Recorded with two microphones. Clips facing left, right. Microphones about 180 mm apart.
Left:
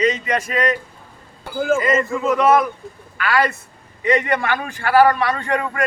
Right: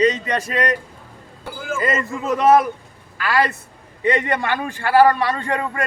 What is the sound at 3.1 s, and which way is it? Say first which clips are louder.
A man's voice: left 1 dB; 30° right (ahead or behind).